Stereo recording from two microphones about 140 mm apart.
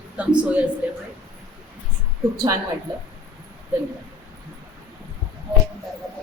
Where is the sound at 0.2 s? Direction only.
10° right (ahead or behind).